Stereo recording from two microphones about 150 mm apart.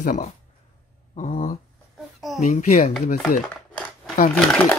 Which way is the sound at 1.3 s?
45° left (ahead or behind).